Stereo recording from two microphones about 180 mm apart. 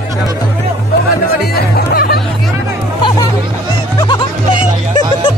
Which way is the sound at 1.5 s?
60° left (ahead or behind).